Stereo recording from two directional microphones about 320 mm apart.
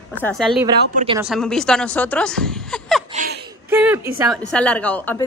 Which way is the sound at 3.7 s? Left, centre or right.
Centre.